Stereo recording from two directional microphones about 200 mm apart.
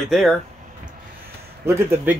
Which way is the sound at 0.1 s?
Centre (ahead or behind).